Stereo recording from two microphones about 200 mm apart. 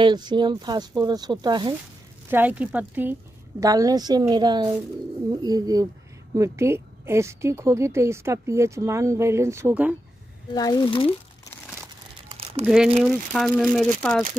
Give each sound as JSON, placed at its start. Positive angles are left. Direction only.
{"t": 0.0, "sound": "speech", "side_deg": -20}
{"t": 2.2, "sound": "a woman's voice", "side_deg": -10}
{"t": 10.5, "sound": "speech", "side_deg": 20}
{"t": 12.3, "sound": "crumpling", "side_deg": -30}
{"t": 12.6, "sound": "speech", "side_deg": -5}